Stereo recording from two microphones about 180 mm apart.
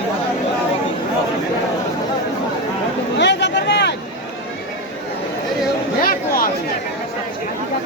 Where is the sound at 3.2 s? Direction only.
75° left (ahead or behind).